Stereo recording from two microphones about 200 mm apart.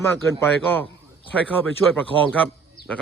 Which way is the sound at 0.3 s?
10° left (ahead or behind).